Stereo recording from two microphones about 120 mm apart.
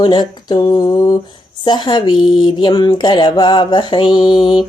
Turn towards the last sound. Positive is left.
turn(degrees=45)  # may be behind; listen again after turning